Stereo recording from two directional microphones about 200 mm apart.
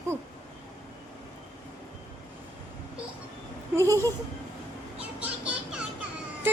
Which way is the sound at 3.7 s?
15° right (ahead or behind).